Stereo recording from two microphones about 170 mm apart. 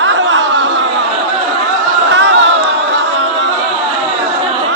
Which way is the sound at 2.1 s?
90° right.